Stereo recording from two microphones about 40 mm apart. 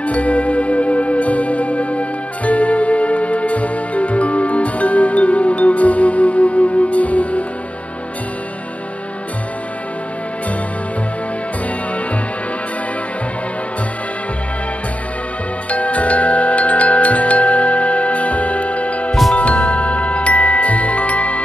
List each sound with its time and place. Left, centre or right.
0.0 s music: left
15.7 s glockenspiel: left
19.3 s music: left